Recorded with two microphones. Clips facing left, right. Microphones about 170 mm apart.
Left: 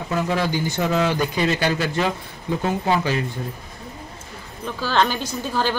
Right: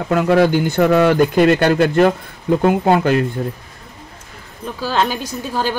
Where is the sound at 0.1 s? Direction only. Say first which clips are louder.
Right 9 dB; 60° right (ahead or behind).